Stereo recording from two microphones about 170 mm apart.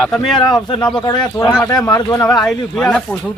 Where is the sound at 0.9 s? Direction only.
25° left (ahead or behind).